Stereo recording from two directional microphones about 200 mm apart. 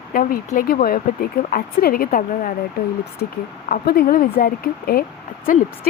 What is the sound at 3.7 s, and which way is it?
A woman's voice, 50° left (ahead or behind).